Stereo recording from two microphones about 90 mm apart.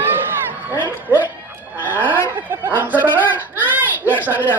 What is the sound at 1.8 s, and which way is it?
Chicken, 20° right (ahead or behind).